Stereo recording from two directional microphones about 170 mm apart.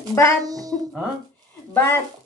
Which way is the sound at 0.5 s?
20° right (ahead or behind).